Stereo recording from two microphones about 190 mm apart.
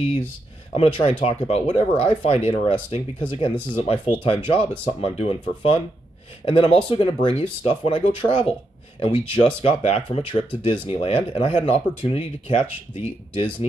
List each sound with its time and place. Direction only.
0.7 s speech: 30° left (ahead or behind)